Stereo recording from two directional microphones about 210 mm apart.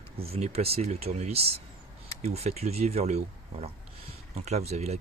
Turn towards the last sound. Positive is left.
turn(degrees=-30)  # may be behind; listen again after turning